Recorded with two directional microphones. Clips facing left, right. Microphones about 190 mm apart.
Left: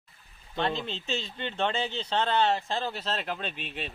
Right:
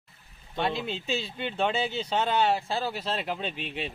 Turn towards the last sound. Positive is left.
turn(degrees=-15)  # may be behind; listen again after turning